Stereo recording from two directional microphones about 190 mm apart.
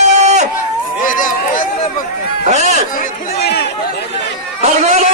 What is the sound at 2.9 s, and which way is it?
Chatter, 55° left (ahead or behind).